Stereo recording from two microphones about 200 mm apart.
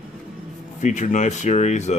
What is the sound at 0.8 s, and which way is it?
Speech, 35° left (ahead or behind).